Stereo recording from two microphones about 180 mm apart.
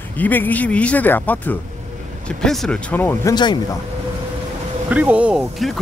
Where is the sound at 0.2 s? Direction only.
10° left (ahead or behind).